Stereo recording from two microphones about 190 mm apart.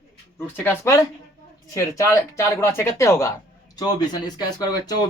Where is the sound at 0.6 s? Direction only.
15° left (ahead or behind).